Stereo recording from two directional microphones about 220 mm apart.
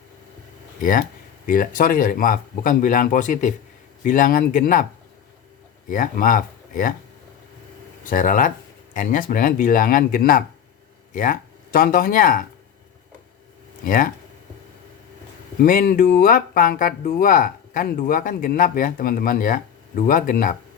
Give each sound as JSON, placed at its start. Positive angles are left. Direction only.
{"t": 0.8, "sound": "speech", "side_deg": 40}
{"t": 5.9, "sound": "speech", "side_deg": 40}
{"t": 8.0, "sound": "speech", "side_deg": 40}
{"t": 13.8, "sound": "speech", "side_deg": 40}
{"t": 15.6, "sound": "speech", "side_deg": 40}